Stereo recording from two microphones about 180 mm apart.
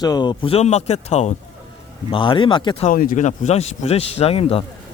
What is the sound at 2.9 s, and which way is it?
Speech, 50° left (ahead or behind).